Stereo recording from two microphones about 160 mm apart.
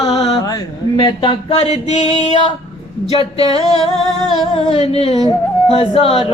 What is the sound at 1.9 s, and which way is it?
Music, 45° left (ahead or behind).